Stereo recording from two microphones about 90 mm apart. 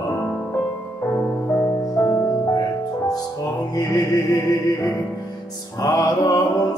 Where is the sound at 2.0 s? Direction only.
50° left (ahead or behind).